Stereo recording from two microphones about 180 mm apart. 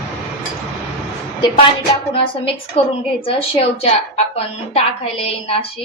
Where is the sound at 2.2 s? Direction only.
30° left (ahead or behind).